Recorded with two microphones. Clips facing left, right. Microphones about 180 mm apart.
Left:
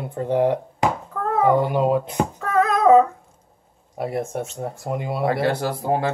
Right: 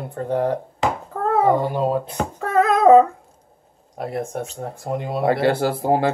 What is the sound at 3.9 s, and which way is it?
Speech, 5° left (ahead or behind).